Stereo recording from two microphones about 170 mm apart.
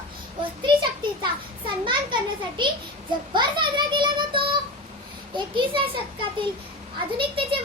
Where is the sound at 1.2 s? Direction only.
30° right (ahead or behind).